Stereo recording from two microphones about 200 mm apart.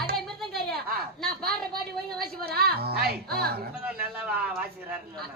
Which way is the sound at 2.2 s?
50° right (ahead or behind).